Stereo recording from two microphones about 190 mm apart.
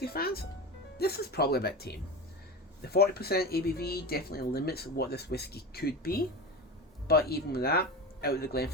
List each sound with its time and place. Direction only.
0.0 s speech: 55° left (ahead or behind)